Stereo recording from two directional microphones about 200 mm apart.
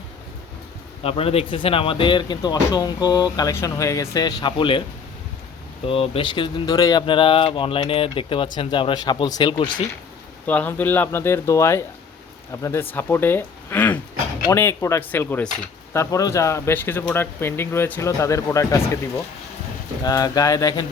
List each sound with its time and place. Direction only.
1.0 s speech: 30° left (ahead or behind)
5.8 s speech: 25° left (ahead or behind)
10.4 s speech: 10° left (ahead or behind)
20.1 s speech: 20° left (ahead or behind)